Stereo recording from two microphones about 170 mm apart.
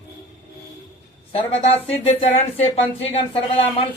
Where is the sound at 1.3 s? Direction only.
35° left (ahead or behind).